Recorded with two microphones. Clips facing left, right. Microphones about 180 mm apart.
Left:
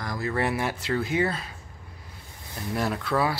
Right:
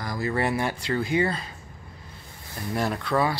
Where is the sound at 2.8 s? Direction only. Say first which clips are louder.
Right 1 dB; centre (ahead or behind).